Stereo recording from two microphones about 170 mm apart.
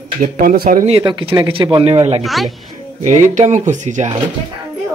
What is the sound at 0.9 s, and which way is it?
Speech, 30° right (ahead or behind).